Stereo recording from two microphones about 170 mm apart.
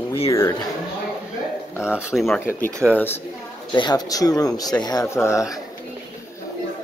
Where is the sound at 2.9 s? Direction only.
10° left (ahead or behind).